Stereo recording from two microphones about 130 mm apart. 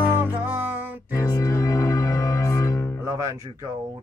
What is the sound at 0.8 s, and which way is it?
Music, 15° right (ahead or behind).